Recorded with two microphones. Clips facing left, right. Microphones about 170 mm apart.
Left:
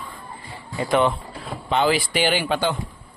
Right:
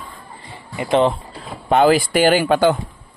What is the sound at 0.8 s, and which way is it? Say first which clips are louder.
Speech: right 4 dB; 30° right (ahead or behind).